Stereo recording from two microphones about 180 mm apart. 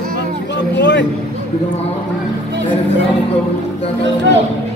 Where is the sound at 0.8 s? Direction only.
75° left (ahead or behind).